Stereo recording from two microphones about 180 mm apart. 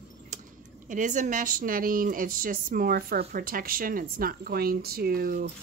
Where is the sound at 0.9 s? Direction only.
45° right (ahead or behind).